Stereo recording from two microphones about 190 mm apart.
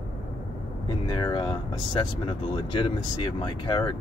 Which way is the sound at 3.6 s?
25° left (ahead or behind).